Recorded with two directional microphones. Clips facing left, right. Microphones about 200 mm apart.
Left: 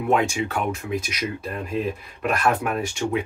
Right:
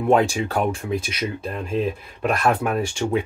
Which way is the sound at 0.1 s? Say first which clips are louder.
Right 3 dB; 35° right (ahead or behind).